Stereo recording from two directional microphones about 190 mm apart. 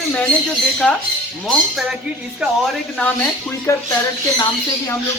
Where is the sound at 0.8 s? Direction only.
5° left (ahead or behind).